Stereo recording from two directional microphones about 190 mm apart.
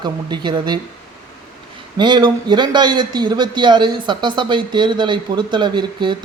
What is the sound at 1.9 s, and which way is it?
Speech, 25° right (ahead or behind).